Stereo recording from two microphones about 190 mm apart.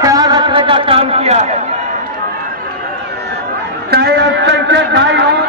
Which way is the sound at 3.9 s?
60° right (ahead or behind).